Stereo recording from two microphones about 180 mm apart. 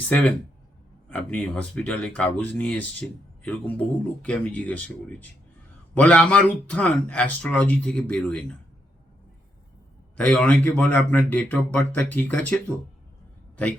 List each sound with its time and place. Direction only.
0.1 s speech: 5° left (ahead or behind)
10.2 s speech: 5° left (ahead or behind)